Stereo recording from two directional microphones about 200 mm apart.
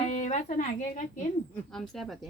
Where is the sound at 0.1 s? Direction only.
35° left (ahead or behind).